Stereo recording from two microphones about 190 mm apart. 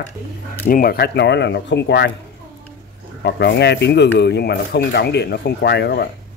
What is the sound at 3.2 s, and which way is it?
Speech, 60° left (ahead or behind).